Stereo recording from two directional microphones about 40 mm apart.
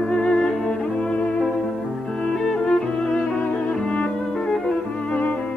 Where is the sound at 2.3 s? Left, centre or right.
Centre.